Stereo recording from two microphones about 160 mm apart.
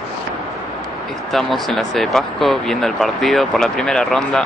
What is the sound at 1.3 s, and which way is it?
Speech, centre (ahead or behind).